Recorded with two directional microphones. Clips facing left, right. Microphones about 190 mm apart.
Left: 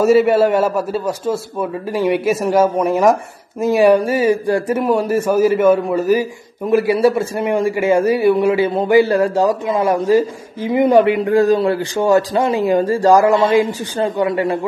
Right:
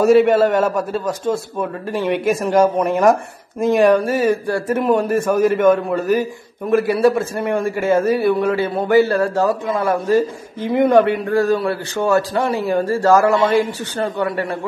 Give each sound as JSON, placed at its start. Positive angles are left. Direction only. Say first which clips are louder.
{"t": 0.0, "sound": "a man's voice", "louder": "even", "side_deg": 5}